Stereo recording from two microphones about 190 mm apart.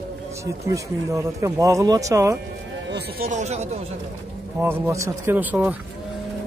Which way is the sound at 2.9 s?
60° right (ahead or behind).